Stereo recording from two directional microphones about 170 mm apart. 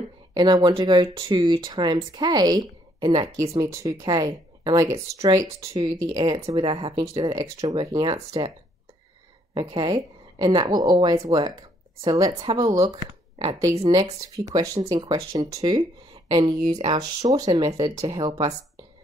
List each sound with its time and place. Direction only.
0.3 s a woman's voice: 25° right (ahead or behind)
9.5 s speech: 30° right (ahead or behind)
13.6 s speech: 20° right (ahead or behind)